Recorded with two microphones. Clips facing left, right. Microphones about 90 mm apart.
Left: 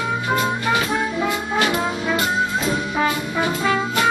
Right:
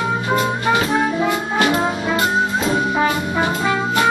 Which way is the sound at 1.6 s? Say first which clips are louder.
Right 4 dB; 35° right (ahead or behind).